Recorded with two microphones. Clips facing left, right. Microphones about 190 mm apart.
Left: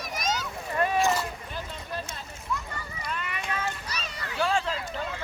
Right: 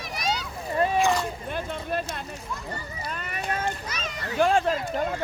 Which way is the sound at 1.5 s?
60° right (ahead or behind).